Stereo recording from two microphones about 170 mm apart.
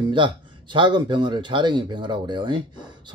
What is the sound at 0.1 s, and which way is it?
Speech, 30° right (ahead or behind).